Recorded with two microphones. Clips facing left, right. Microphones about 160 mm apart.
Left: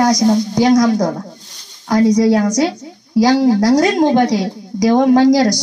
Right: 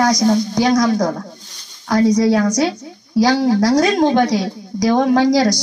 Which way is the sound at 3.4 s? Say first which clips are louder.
Left 2 dB; 20° left (ahead or behind).